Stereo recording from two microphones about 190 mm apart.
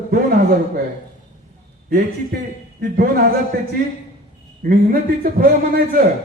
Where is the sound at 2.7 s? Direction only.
50° right (ahead or behind).